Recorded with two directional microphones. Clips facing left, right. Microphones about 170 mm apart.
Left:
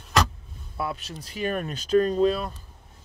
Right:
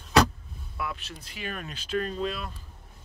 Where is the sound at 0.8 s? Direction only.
35° left (ahead or behind).